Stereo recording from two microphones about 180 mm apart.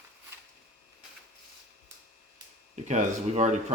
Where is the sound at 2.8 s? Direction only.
40° right (ahead or behind).